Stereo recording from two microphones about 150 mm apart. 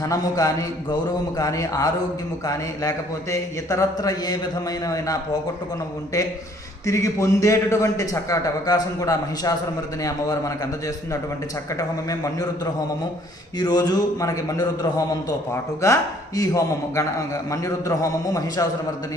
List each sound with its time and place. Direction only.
0.0 s speech: 25° left (ahead or behind)